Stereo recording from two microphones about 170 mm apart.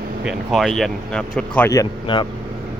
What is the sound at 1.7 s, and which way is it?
Speech, 25° left (ahead or behind).